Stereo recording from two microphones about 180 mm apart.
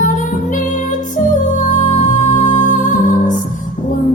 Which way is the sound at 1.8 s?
45° left (ahead or behind).